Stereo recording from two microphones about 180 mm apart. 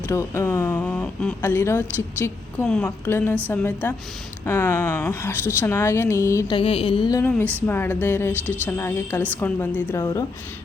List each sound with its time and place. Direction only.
0.1 s a woman's voice: 15° left (ahead or behind)
2.6 s a woman's voice: 5° left (ahead or behind)
6.6 s a woman's voice: 30° left (ahead or behind)
7.2 s a woman's voice: 10° left (ahead or behind)